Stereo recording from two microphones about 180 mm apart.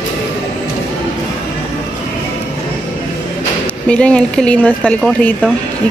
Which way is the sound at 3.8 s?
5° left (ahead or behind).